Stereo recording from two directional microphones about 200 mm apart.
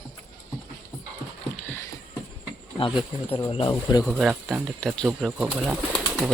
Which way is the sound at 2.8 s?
25° left (ahead or behind).